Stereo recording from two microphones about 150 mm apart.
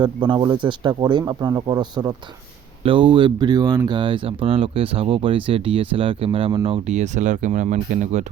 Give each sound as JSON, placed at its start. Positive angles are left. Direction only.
{"t": 0.0, "sound": "speech", "side_deg": -30}
{"t": 6.8, "sound": "speech", "side_deg": -50}